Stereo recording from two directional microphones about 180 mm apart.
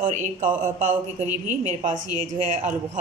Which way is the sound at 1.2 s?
10° right (ahead or behind).